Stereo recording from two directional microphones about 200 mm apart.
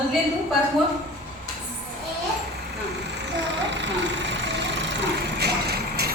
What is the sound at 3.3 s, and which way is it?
Vehicle, 60° right (ahead or behind).